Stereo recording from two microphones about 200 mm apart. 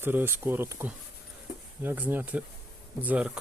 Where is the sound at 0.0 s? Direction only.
10° right (ahead or behind).